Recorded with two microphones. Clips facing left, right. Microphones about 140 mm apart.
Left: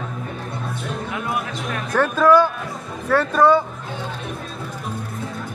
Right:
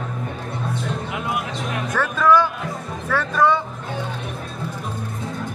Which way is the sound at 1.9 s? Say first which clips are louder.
Left 5 dB; 15° left (ahead or behind).